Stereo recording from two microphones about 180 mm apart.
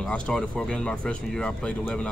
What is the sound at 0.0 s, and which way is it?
A man's voice, 5° left (ahead or behind).